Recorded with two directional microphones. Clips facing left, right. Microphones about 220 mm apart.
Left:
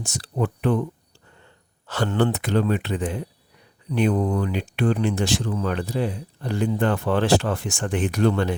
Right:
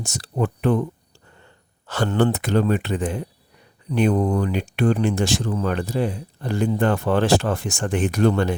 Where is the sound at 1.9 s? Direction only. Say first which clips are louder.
Right 2 dB; 45° right (ahead or behind).